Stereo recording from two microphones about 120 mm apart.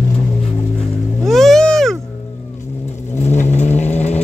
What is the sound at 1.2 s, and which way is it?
Vehicle, centre (ahead or behind).